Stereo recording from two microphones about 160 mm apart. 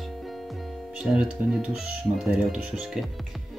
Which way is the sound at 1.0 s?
5° right (ahead or behind).